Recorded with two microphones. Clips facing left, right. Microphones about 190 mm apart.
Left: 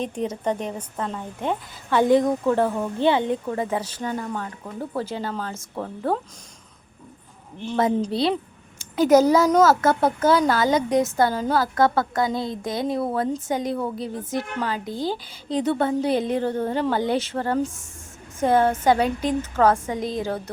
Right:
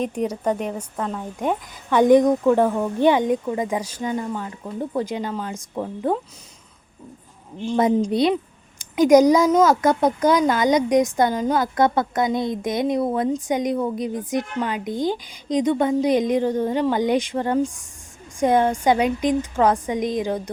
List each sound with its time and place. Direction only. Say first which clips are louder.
0.0 s speech: right 3 dB; 10° right (ahead or behind)
0.8 s a woman's voice: right 2 dB; centre (ahead or behind)
1.4 s speech: right 3 dB; 15° right (ahead or behind)
7.7 s speech: right 3 dB; 15° right (ahead or behind)